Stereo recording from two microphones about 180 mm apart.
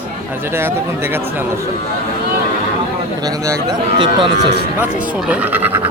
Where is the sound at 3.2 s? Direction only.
20° right (ahead or behind).